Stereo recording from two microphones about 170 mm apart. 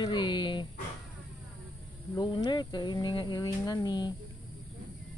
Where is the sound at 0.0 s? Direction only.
25° left (ahead or behind).